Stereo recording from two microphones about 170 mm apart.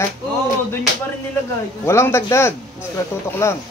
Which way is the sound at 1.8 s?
15° left (ahead or behind).